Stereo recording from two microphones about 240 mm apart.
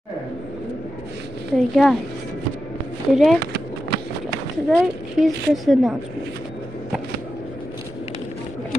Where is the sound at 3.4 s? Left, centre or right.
Right.